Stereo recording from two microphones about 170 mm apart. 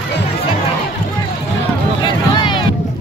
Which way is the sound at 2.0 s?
30° left (ahead or behind).